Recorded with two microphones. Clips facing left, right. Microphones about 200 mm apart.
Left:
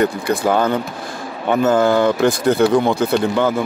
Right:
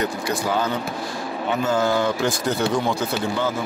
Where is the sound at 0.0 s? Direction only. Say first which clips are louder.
Left 7 dB; 55° left (ahead or behind).